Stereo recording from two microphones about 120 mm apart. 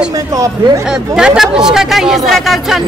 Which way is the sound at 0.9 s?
5° right (ahead or behind).